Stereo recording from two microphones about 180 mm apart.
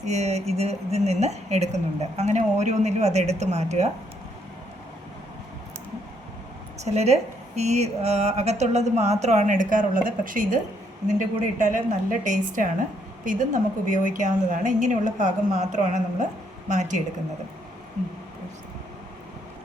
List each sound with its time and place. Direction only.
0.0 s a woman's voice: 40° right (ahead or behind)
6.8 s a woman's voice: 35° right (ahead or behind)